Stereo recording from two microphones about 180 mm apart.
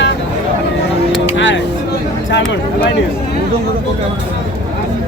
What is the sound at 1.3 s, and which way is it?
Speech, 90° left.